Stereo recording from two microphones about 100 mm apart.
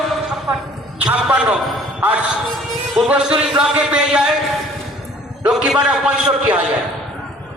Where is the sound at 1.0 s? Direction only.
10° right (ahead or behind).